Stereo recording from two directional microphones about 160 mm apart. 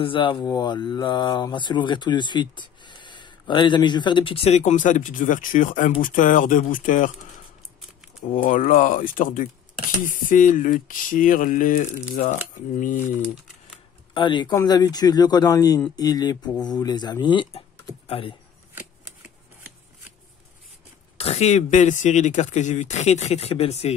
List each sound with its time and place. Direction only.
0.0 s speech: 30° left (ahead or behind); by 7.1 s 55° left (ahead or behind)
8.4 s speech: 55° left (ahead or behind)
14.1 s speech: 30° left (ahead or behind)
18.8 s shuffling cards: 10° right (ahead or behind)
21.2 s speech: 40° left (ahead or behind)